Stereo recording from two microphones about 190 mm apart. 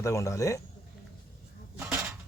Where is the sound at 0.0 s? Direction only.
15° left (ahead or behind).